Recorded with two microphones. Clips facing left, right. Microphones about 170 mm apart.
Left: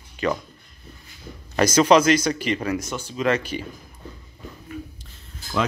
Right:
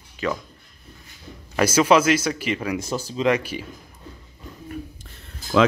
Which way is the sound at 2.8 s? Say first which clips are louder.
Right 3 dB; 35° right (ahead or behind).